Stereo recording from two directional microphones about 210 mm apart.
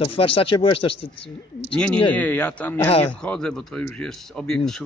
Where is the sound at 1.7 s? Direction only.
5° left (ahead or behind).